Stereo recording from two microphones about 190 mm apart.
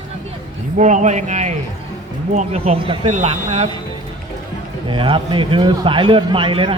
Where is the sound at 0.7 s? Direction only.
40° right (ahead or behind).